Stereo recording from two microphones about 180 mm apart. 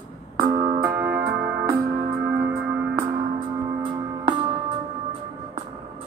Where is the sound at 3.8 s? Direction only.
30° right (ahead or behind).